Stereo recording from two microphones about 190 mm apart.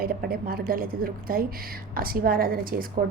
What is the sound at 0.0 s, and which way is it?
A woman's voice, 50° right (ahead or behind).